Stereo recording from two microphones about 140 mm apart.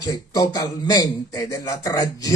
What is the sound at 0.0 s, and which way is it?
A man's voice, 25° left (ahead or behind).